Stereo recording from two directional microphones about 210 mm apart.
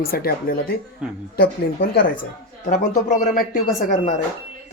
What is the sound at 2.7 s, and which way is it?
Speech, 40° left (ahead or behind).